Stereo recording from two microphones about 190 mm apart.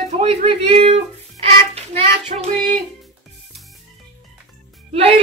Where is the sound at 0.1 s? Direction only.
35° right (ahead or behind).